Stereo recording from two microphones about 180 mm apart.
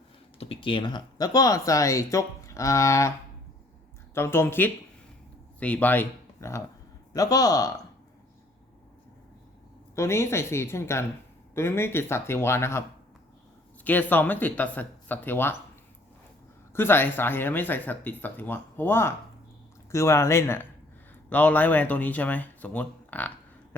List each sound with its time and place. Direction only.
0.3 s speech: 30° left (ahead or behind); by 3.1 s 15° left (ahead or behind)
4.1 s a man's voice: 15° left (ahead or behind)
9.9 s speech: 15° left (ahead or behind)
13.8 s speech: 10° left (ahead or behind)
16.7 s speech: 10° left (ahead or behind)